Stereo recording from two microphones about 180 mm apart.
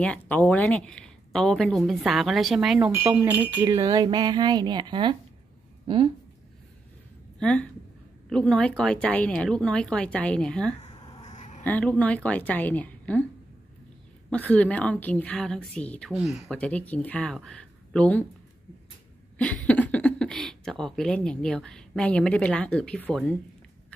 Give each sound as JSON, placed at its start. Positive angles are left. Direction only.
{"t": 0.0, "sound": "speech", "side_deg": 10}
{"t": 7.3, "sound": "a woman's voice", "side_deg": 5}
{"t": 10.8, "sound": "a sound", "side_deg": 25}
{"t": 11.3, "sound": "a sound", "side_deg": 40}
{"t": 11.6, "sound": "a woman's voice", "side_deg": 5}
{"t": 14.3, "sound": "a woman's voice", "side_deg": 10}
{"t": 19.3, "sound": "speech", "side_deg": 5}